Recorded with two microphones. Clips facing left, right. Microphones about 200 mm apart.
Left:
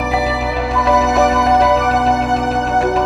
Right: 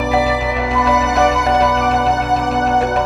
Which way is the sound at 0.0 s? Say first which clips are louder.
Right 2 dB; centre (ahead or behind).